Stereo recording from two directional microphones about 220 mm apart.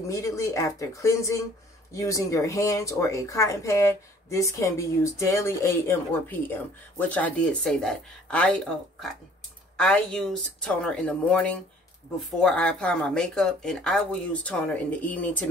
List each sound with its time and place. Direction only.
0.1 s speech: 15° left (ahead or behind)